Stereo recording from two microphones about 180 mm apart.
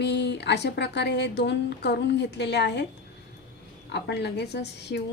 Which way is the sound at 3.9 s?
65° left (ahead or behind).